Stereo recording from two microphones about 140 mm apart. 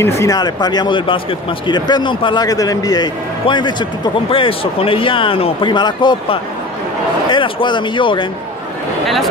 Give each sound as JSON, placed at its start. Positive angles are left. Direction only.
{"t": 0.0, "sound": "a man's voice", "side_deg": 20}